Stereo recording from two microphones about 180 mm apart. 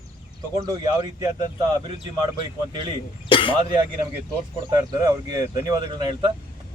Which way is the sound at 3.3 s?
30° left (ahead or behind).